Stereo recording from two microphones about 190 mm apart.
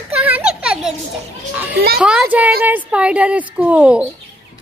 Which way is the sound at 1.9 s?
5° right (ahead or behind).